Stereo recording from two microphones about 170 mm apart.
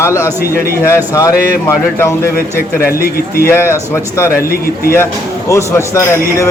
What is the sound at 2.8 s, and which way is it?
Speech, 60° left (ahead or behind).